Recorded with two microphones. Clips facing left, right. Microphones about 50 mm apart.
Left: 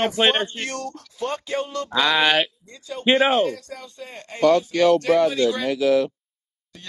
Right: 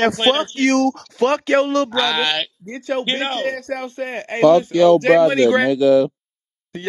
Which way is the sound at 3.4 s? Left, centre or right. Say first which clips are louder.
Right 1 dB; right.